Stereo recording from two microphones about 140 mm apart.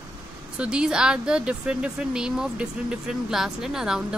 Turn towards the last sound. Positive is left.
turn(degrees=-5)  # may be behind; listen again after turning